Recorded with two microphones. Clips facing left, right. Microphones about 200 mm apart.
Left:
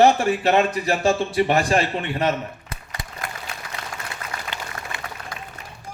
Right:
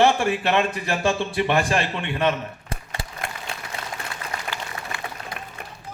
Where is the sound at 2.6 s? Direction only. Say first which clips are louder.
Right 3 dB; 30° right (ahead or behind).